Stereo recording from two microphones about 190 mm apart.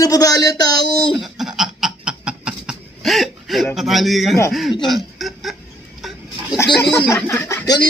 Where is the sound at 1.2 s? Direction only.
Centre (ahead or behind).